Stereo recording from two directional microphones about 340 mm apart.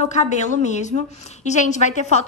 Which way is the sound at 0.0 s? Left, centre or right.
Left.